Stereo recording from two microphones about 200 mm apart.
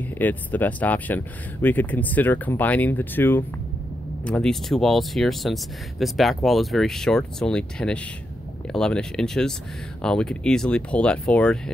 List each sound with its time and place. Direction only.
0.0 s speech: 10° left (ahead or behind)